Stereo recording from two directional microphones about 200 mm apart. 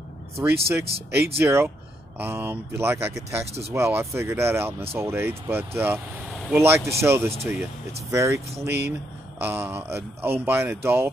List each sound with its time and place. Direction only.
0.4 s speech: 10° right (ahead or behind)
8.6 s speech: 55° right (ahead or behind)
9.4 s speech: 10° right (ahead or behind)